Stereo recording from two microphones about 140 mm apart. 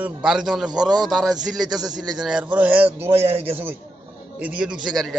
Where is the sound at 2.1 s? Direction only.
5° right (ahead or behind).